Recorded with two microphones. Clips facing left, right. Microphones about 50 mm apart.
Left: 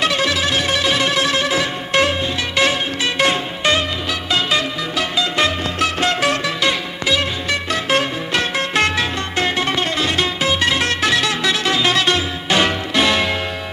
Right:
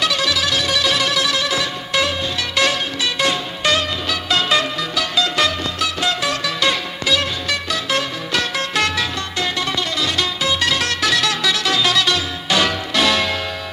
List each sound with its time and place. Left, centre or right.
0.0 s music: left
4.3 s music: centre
4.9 s music: left
5.8 s music: left
6.4 s music: centre
7.7 s music: left